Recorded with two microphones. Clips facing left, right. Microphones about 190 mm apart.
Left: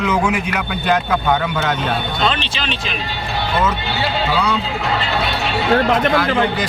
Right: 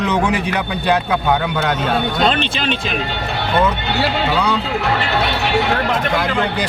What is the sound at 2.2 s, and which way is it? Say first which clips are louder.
Speech: right 3 dB; 50° right (ahead or behind).